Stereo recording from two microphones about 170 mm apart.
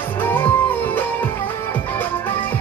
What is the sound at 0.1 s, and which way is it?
Music, 10° left (ahead or behind).